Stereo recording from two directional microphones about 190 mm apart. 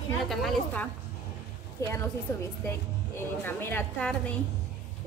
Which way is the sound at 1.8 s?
15° left (ahead or behind).